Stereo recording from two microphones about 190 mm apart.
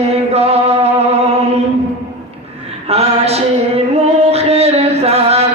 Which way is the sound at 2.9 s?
35° right (ahead or behind).